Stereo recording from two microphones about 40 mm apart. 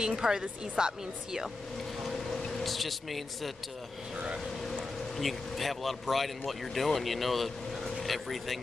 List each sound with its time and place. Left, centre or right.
0.0 s a woman's voice: centre
2.0 s a sound: centre
2.6 s speech: centre
5.1 s speech: centre